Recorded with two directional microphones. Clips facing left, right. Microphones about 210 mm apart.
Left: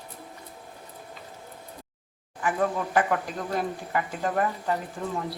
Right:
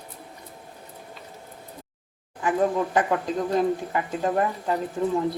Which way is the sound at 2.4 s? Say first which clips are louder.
Right 4 dB; 20° right (ahead or behind).